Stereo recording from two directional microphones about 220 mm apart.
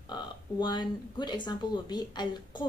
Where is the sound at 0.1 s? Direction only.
20° left (ahead or behind).